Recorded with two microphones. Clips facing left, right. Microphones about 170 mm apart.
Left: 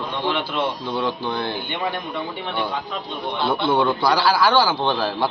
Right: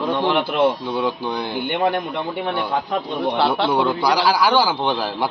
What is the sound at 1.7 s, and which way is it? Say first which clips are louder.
Speech: right 6 dB; 55° right (ahead or behind).